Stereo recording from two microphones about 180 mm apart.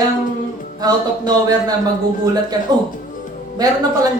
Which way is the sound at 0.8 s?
20° right (ahead or behind).